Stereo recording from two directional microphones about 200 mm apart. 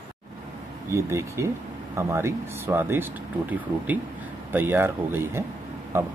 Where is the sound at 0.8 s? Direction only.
15° right (ahead or behind).